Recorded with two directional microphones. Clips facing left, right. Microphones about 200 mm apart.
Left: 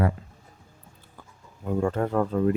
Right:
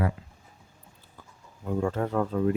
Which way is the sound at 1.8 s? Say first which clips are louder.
Left 2 dB; 50° left (ahead or behind).